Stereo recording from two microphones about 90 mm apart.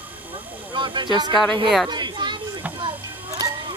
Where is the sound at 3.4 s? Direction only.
45° right (ahead or behind).